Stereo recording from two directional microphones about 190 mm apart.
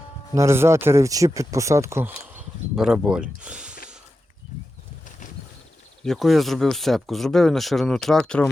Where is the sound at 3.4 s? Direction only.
5° right (ahead or behind).